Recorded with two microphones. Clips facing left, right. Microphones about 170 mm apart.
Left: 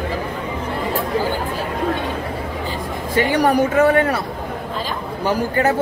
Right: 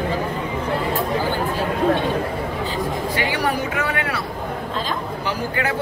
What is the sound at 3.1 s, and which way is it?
A man's voice, 45° left (ahead or behind).